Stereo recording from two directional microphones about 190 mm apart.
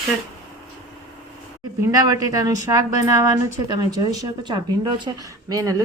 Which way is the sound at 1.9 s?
20° right (ahead or behind).